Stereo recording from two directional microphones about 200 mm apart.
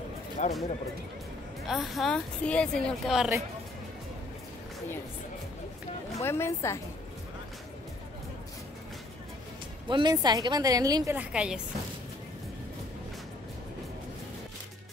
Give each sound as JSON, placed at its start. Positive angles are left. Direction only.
{"t": 0.4, "sound": "speech", "side_deg": 35}
{"t": 1.7, "sound": "speech", "side_deg": 0}
{"t": 6.1, "sound": "speech", "side_deg": 10}
{"t": 9.8, "sound": "a woman's voice", "side_deg": -20}
{"t": 11.1, "sound": "speech", "side_deg": -5}